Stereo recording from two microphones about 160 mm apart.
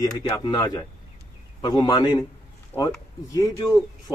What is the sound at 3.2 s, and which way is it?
Speech, 25° left (ahead or behind).